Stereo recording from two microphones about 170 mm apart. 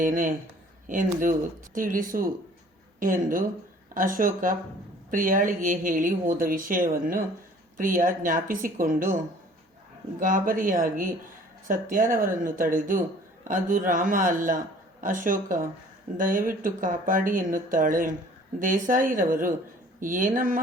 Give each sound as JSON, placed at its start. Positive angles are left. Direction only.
{"t": 0.0, "sound": "speech", "side_deg": -50}